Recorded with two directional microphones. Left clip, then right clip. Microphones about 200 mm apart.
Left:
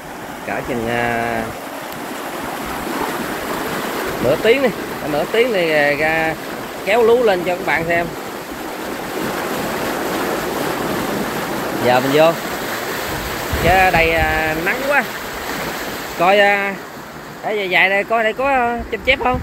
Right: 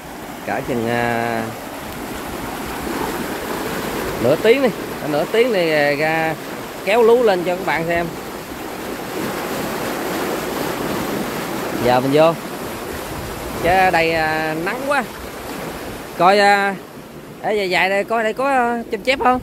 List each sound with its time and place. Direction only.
0.5 s speech: 25° right (ahead or behind)
4.5 s speech: 20° right (ahead or behind)
11.9 s speech: 20° right (ahead or behind)
13.7 s speech: 20° right (ahead or behind)
16.2 s speech: 30° right (ahead or behind)